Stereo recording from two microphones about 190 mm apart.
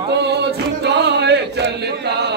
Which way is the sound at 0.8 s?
65° right (ahead or behind).